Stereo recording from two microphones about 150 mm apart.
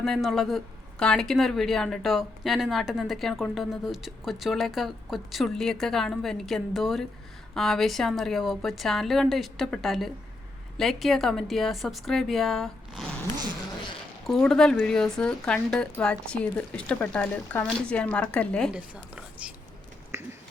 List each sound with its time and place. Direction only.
0.0 s speech: centre (ahead or behind)
14.3 s speech: centre (ahead or behind)
18.7 s speech: 10° right (ahead or behind)
20.1 s a sound: 15° right (ahead or behind)